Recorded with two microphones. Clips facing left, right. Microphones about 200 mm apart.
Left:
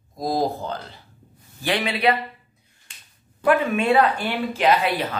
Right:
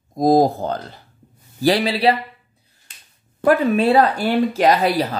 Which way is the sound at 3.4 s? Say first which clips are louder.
Right 4 dB; 35° right (ahead or behind).